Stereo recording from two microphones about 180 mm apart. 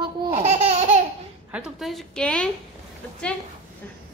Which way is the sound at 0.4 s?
35° right (ahead or behind).